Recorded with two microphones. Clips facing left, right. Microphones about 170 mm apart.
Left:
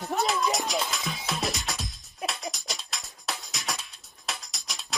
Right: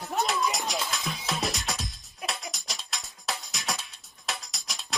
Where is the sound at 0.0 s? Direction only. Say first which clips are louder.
Left 1 dB; centre (ahead or behind).